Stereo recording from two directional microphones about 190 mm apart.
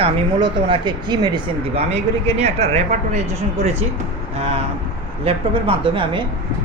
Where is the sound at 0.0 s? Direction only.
25° right (ahead or behind).